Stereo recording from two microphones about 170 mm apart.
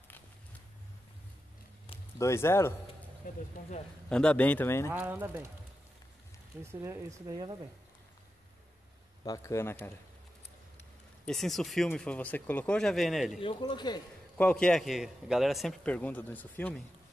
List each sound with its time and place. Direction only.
2.1 s speech: 15° left (ahead or behind)
4.1 s speech: 5° left (ahead or behind)
4.9 s speech: 10° right (ahead or behind)
6.6 s speech: 15° right (ahead or behind)
9.2 s speech: 20° left (ahead or behind)
11.2 s a man's voice: centre (ahead or behind)
13.4 s speech: 30° left (ahead or behind)
14.3 s a man's voice: 5° left (ahead or behind)